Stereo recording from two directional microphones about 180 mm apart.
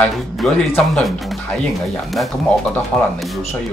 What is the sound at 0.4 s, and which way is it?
Speech, centre (ahead or behind).